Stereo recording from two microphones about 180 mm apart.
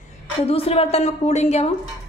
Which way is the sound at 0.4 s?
35° left (ahead or behind).